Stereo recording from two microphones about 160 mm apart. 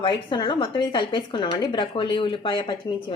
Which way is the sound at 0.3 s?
30° left (ahead or behind).